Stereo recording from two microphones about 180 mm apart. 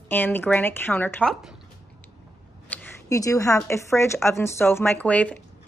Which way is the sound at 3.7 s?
15° left (ahead or behind).